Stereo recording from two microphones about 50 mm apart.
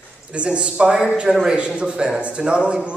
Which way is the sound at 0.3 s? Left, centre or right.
Right.